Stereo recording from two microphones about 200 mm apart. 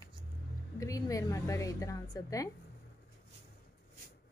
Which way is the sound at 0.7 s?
15° left (ahead or behind).